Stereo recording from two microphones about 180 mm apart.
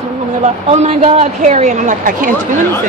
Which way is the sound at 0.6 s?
40° right (ahead or behind).